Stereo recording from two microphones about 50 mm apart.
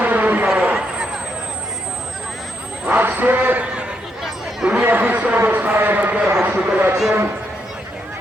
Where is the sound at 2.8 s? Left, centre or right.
Right.